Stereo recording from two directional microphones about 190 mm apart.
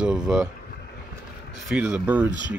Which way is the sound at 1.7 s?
5° right (ahead or behind).